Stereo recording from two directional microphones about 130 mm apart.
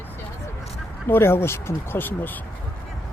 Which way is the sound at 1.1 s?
20° left (ahead or behind).